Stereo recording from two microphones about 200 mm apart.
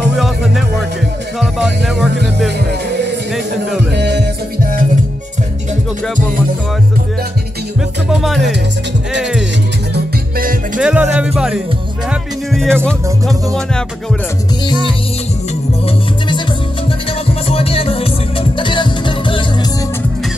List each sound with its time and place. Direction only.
0.2 s speech: centre (ahead or behind)
3.9 s music: 55° right (ahead or behind)
8.1 s speech: centre (ahead or behind)
10.8 s speech: 5° right (ahead or behind)
17.5 s music: 30° left (ahead or behind)